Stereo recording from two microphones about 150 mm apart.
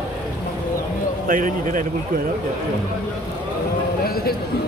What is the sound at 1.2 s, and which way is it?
A man's voice, 65° right (ahead or behind).